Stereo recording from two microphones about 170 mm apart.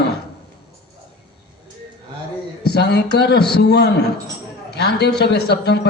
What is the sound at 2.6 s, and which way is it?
A man's voice, 75° left (ahead or behind).